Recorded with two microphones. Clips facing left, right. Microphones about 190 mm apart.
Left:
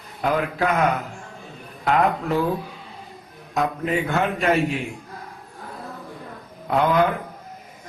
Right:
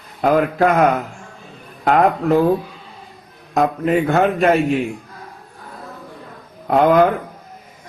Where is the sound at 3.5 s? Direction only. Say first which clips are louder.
Right 6 dB; 50° right (ahead or behind).